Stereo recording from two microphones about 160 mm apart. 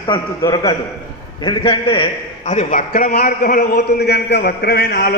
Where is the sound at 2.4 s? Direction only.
50° left (ahead or behind).